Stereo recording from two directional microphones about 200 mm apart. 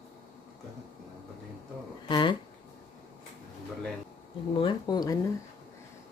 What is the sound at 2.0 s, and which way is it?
Speech, 25° left (ahead or behind).